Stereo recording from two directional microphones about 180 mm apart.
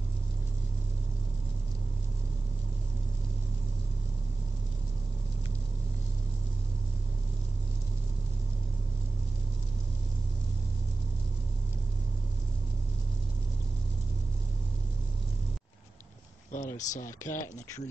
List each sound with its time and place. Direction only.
16.5 s speech: 45° left (ahead or behind)
17.2 s speech: 15° left (ahead or behind)